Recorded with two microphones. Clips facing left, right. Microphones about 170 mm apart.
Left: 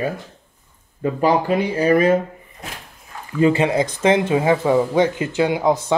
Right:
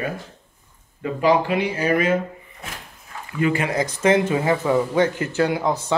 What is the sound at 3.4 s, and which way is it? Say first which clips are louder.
Speech: left 5 dB; 25° left (ahead or behind).